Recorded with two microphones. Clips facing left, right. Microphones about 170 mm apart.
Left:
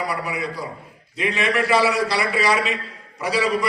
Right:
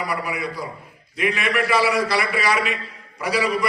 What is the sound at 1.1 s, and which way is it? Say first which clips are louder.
A man's voice: even; 30° left (ahead or behind).